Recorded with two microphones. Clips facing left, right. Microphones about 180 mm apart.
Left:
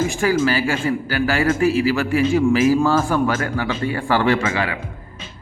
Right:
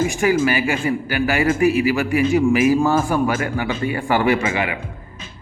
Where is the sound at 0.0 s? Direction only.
15° right (ahead or behind).